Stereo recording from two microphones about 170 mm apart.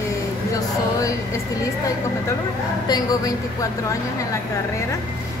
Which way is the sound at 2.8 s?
20° left (ahead or behind).